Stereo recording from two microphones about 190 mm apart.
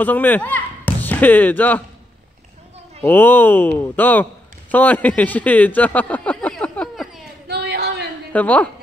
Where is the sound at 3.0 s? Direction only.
10° left (ahead or behind).